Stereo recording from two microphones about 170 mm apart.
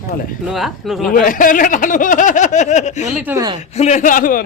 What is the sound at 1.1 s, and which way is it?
Speech, 55° left (ahead or behind).